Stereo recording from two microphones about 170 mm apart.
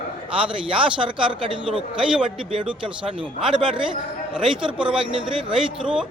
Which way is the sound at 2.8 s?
30° right (ahead or behind).